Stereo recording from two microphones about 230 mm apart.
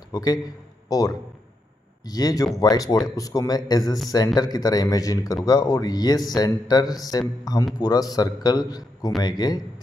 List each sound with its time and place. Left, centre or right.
0.1 s a man's voice: centre